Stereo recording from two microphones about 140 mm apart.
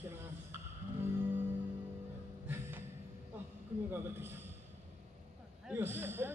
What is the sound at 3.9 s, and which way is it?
Speech, 15° right (ahead or behind).